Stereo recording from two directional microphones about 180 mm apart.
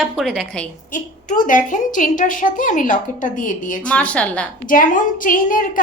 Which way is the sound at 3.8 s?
5° left (ahead or behind).